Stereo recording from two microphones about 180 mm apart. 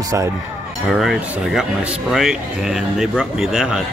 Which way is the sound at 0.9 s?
Centre (ahead or behind).